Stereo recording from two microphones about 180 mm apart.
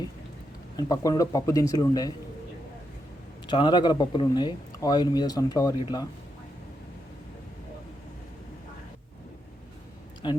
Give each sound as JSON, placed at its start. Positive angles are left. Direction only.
{"t": 0.8, "sound": "speech", "side_deg": 20}
{"t": 3.4, "sound": "speech", "side_deg": 25}
{"t": 10.2, "sound": "speech", "side_deg": 25}